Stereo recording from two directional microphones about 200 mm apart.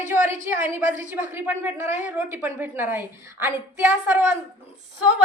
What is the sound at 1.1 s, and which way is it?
A woman's voice, 10° right (ahead or behind).